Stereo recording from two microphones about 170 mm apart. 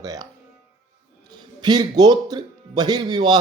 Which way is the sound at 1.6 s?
25° right (ahead or behind).